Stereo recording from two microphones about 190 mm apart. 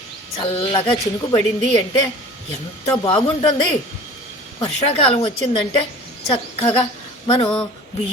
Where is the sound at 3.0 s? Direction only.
25° left (ahead or behind).